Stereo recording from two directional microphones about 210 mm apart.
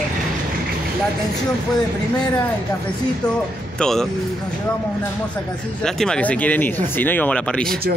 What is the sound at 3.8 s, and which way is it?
Speech, centre (ahead or behind).